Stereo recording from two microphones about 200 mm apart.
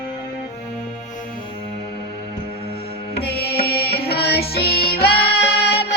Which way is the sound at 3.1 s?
55° left (ahead or behind).